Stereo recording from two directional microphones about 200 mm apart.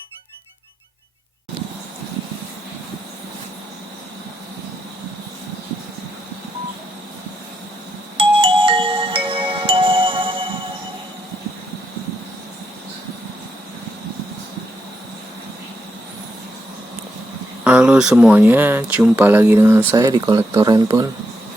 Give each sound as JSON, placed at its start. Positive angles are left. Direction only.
{"t": 8.2, "sound": "music", "side_deg": -25}
{"t": 17.6, "sound": "a sound", "side_deg": -5}
{"t": 18.1, "sound": "speech", "side_deg": -5}